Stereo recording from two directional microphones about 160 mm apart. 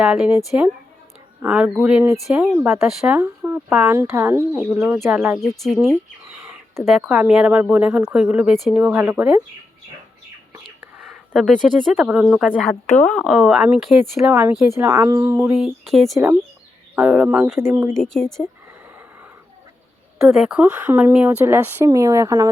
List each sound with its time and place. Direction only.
0.0 s speech: 5° right (ahead or behind)
1.4 s speech: 10° right (ahead or behind)
3.2 s speech: 15° right (ahead or behind)
5.4 s speech: centre (ahead or behind)
7.1 s speech: 5° right (ahead or behind)
10.5 s bird: 15° right (ahead or behind)
11.0 s speech: centre (ahead or behind)
14.3 s speech: 15° right (ahead or behind)
16.1 s speech: 20° right (ahead or behind)
16.9 s speech: 5° right (ahead or behind)
17.9 s speech: 5° left (ahead or behind)
20.2 s speech: 5° right (ahead or behind)